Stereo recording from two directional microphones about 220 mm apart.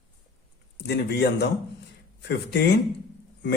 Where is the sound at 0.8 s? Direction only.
50° left (ahead or behind).